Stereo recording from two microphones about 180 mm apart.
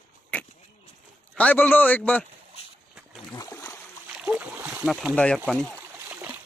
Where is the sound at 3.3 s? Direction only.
20° left (ahead or behind).